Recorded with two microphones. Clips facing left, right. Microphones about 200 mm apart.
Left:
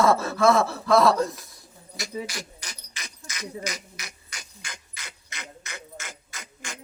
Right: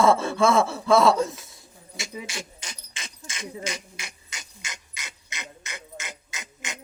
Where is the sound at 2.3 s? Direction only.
25° right (ahead or behind).